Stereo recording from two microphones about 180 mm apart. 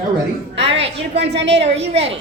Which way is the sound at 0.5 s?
30° right (ahead or behind).